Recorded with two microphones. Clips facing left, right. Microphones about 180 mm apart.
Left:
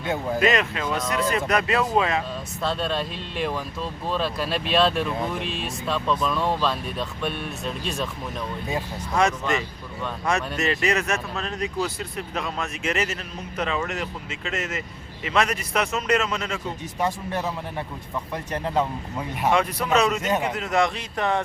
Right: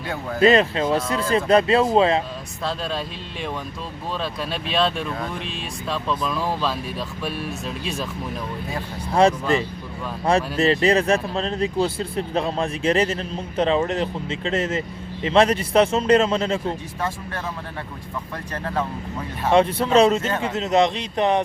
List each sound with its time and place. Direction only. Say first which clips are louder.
0.3 s speech: right 8 dB; 30° right (ahead or behind)
2.6 s speech: left 1 dB; centre (ahead or behind)
9.1 s speech: right 5 dB; 30° right (ahead or behind)
18.5 s speech: left 2 dB; 20° left (ahead or behind)
19.5 s speech: right 4 dB; 30° right (ahead or behind)
20.2 s a man's voice: left 1 dB; 15° left (ahead or behind)
20.5 s speech: right 4 dB; 20° right (ahead or behind)